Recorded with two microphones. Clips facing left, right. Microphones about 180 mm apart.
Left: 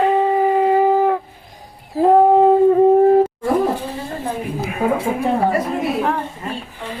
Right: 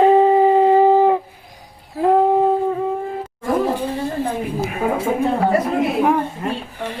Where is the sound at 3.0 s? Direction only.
50° left (ahead or behind).